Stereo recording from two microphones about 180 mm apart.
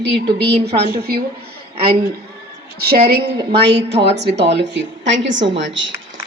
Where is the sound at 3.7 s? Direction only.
70° right (ahead or behind).